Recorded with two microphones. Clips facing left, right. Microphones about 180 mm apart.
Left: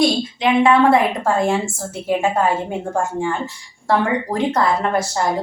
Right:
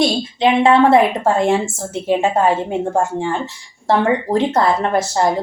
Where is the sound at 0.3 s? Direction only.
30° right (ahead or behind).